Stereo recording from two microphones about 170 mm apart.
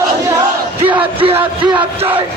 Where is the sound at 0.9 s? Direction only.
30° right (ahead or behind).